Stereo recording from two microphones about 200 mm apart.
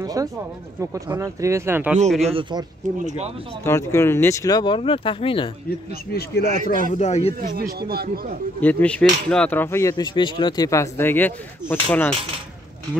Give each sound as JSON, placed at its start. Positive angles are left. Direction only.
{"t": 0.0, "sound": "a sound", "side_deg": -15}
{"t": 0.7, "sound": "speech", "side_deg": -15}
{"t": 2.2, "sound": "a man's voice", "side_deg": -25}
{"t": 3.6, "sound": "speech", "side_deg": 15}
{"t": 6.1, "sound": "a man's voice", "side_deg": 55}
{"t": 6.5, "sound": "a man's voice", "side_deg": -40}
{"t": 6.9, "sound": "speech", "side_deg": 35}
{"t": 7.5, "sound": "speech", "side_deg": -50}
{"t": 8.5, "sound": "speech", "side_deg": 10}